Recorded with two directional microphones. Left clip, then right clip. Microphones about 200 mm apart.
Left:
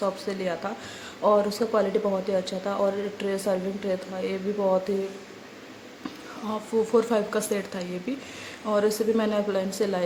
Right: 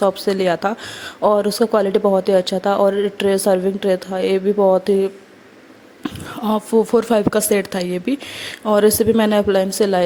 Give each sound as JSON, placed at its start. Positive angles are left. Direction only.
{"t": 0.0, "sound": "a woman's voice", "side_deg": -45}
{"t": 6.0, "sound": "speech", "side_deg": -40}